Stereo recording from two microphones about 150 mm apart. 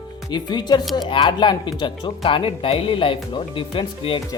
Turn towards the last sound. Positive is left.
turn(degrees=35)  # may be behind; listen again after turning